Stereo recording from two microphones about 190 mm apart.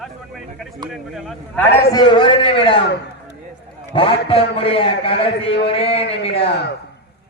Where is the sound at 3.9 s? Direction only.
30° left (ahead or behind).